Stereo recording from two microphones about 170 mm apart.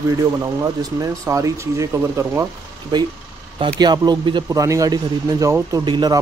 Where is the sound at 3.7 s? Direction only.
25° right (ahead or behind).